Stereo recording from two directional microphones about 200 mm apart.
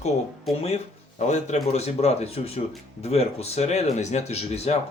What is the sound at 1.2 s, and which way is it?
Speech, 35° left (ahead or behind).